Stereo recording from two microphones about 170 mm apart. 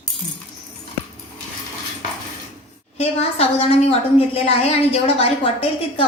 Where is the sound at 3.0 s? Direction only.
35° left (ahead or behind).